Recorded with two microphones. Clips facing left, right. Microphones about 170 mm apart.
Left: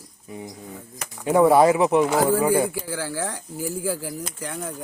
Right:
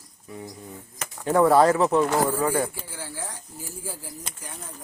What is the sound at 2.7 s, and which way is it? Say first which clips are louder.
Speech: left 9 dB; 90° left.